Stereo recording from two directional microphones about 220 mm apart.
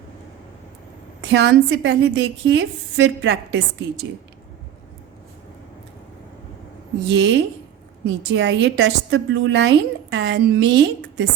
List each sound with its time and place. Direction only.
1.3 s a woman's voice: 55° right (ahead or behind)
7.1 s a woman's voice: 55° right (ahead or behind)